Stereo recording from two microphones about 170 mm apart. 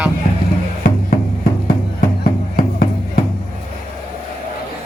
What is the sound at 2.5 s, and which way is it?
Music, 65° left (ahead or behind).